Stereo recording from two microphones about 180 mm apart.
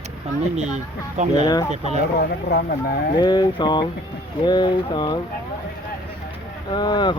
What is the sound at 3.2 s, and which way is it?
Mantra, 20° left (ahead or behind).